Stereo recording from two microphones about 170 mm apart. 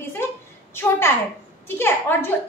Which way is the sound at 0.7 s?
15° left (ahead or behind).